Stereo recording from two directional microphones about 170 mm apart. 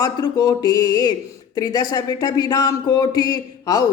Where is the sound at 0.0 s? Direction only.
20° left (ahead or behind).